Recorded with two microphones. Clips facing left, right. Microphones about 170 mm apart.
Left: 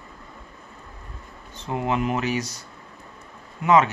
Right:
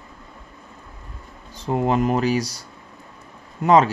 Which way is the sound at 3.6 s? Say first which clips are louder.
Right 3 dB; 35° right (ahead or behind).